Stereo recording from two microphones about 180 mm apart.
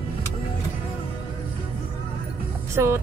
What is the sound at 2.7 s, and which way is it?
Speech, 15° right (ahead or behind).